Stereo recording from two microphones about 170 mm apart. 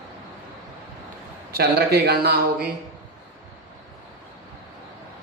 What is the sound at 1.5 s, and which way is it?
Speech, 70° right (ahead or behind).